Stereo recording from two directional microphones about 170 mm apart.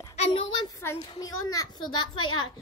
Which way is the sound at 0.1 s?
40° left (ahead or behind).